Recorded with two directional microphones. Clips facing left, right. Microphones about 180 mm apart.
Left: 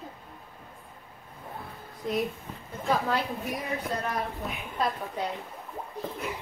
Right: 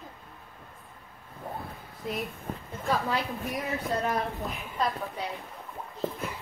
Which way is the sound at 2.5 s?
50° right (ahead or behind).